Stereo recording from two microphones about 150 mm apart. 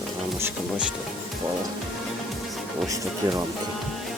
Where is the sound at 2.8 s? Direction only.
20° right (ahead or behind).